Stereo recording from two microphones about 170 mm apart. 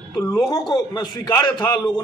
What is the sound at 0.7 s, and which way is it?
A man's voice, 25° left (ahead or behind).